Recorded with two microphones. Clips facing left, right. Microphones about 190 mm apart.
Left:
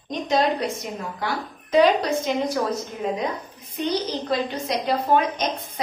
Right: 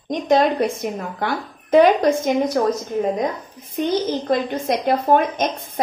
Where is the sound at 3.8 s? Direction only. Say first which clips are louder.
Right 5 dB; 50° right (ahead or behind).